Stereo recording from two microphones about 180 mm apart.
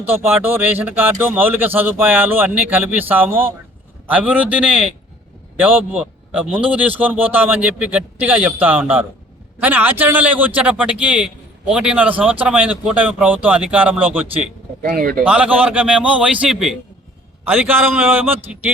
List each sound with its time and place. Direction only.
0.0 s a man's voice: 10° right (ahead or behind)
14.8 s speech: 50° right (ahead or behind)
15.2 s a man's voice: 10° right (ahead or behind)